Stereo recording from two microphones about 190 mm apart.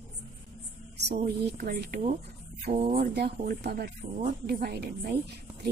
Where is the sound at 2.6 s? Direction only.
45° right (ahead or behind).